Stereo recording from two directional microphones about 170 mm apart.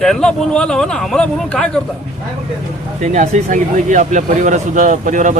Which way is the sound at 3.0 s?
45° right (ahead or behind).